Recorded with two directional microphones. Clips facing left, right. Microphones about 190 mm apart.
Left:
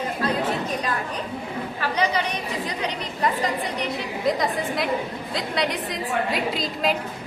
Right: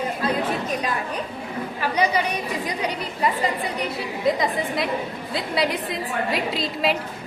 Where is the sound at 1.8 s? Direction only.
10° right (ahead or behind).